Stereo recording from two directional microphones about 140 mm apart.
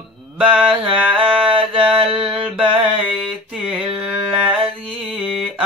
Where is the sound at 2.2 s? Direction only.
5° right (ahead or behind).